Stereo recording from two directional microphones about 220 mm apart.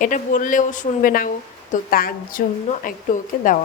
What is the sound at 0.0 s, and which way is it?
Speech, 35° left (ahead or behind).